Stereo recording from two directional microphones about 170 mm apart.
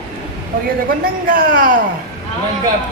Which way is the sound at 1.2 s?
55° right (ahead or behind).